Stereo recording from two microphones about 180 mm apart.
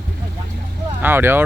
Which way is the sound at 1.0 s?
10° right (ahead or behind).